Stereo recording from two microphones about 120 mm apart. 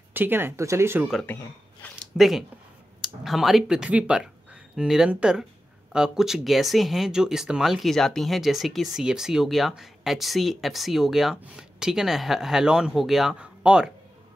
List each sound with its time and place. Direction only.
0.1 s speech: 15° right (ahead or behind)
1.2 s speech: 15° left (ahead or behind)
2.1 s speech: centre (ahead or behind)